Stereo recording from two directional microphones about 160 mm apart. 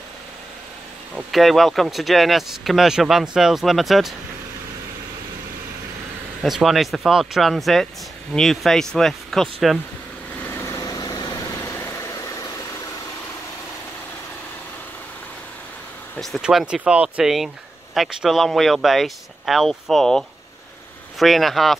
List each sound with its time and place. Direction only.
1.1 s speech: centre (ahead or behind)
6.4 s speech: centre (ahead or behind)
10.4 s vehicle: 15° left (ahead or behind)
16.2 s speech: centre (ahead or behind)